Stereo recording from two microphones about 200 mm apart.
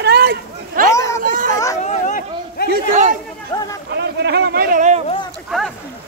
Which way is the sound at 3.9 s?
55° right (ahead or behind).